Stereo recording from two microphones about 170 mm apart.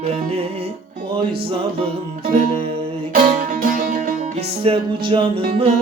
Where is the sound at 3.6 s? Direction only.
55° right (ahead or behind).